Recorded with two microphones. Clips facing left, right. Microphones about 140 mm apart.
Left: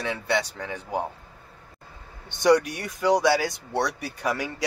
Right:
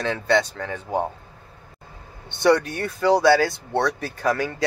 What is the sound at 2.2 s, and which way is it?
Speech, 15° left (ahead or behind).